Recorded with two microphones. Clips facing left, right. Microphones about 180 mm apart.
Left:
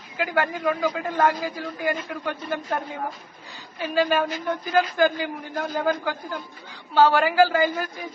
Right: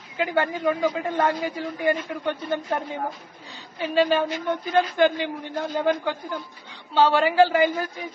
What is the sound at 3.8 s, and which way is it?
Speech, 25° right (ahead or behind).